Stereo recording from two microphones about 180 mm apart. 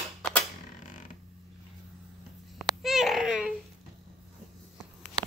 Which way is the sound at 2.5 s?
Centre (ahead or behind).